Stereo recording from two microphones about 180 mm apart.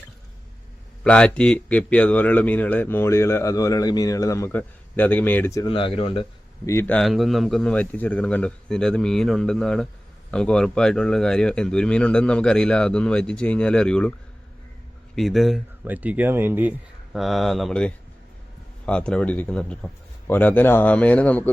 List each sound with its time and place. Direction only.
1.0 s a man's voice: 5° left (ahead or behind)
5.6 s speech: 30° left (ahead or behind)
6.7 s speech: 10° left (ahead or behind)
15.1 s a man's voice: centre (ahead or behind)